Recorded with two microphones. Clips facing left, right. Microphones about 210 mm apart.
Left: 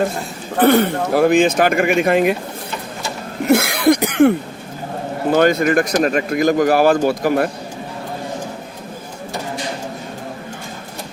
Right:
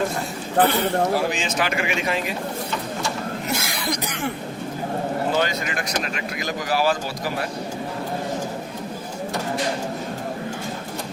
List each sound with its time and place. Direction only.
0.7 s speech: 55° left (ahead or behind)
3.4 s speech: 60° left (ahead or behind)
5.3 s a man's voice: 55° left (ahead or behind)